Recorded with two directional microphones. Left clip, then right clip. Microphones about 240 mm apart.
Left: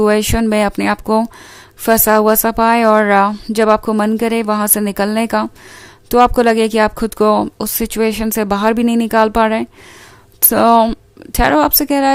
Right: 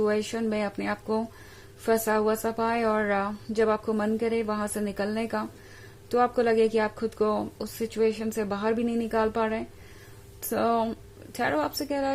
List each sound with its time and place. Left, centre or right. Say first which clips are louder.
0.0 s speech: left 13 dB; left